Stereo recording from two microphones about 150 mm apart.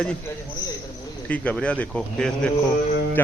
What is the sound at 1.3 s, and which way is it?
A man's voice, 10° left (ahead or behind).